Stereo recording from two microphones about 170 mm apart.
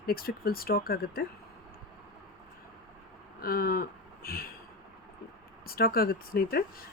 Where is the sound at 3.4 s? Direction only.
60° left (ahead or behind).